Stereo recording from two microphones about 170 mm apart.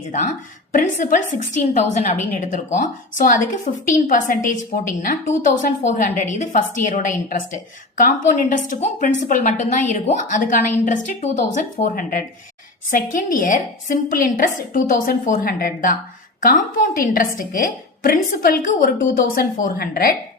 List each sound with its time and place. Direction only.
0.1 s a woman's voice: 45° left (ahead or behind)